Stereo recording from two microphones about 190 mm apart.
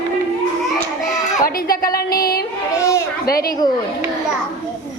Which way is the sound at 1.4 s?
50° left (ahead or behind).